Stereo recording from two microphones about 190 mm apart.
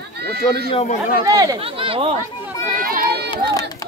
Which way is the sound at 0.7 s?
35° left (ahead or behind).